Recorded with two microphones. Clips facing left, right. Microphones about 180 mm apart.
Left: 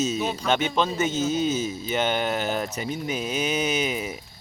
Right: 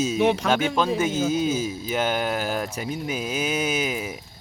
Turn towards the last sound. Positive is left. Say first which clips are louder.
# even
turn(degrees=-5)  # may be behind; listen again after turning